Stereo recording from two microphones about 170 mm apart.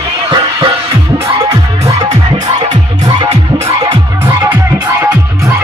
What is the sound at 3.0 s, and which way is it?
Music, 25° right (ahead or behind).